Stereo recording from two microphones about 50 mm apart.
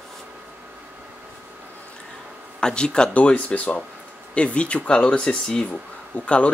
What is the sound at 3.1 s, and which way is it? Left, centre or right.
Speech, left.